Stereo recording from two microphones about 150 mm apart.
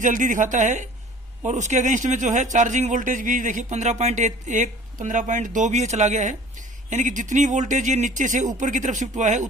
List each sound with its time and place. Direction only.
0.0 s speech: 60° right (ahead or behind)